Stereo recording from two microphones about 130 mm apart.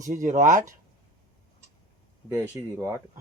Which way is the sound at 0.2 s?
75° right (ahead or behind).